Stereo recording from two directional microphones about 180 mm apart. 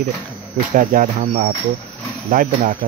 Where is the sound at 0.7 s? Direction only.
50° right (ahead or behind).